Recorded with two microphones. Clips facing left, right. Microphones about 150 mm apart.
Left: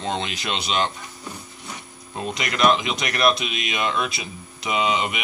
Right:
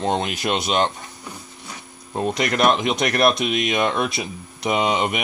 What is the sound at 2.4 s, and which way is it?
Speech, 45° right (ahead or behind).